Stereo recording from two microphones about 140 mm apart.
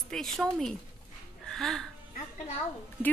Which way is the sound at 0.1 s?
5° left (ahead or behind).